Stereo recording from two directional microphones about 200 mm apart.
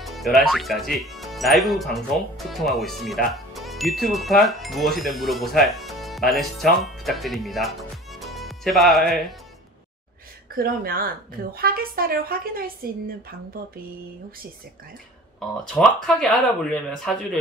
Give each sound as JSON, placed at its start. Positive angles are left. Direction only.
{"t": 0.0, "sound": "speech", "side_deg": 0}
{"t": 10.5, "sound": "speech", "side_deg": -50}
{"t": 15.7, "sound": "speech", "side_deg": 5}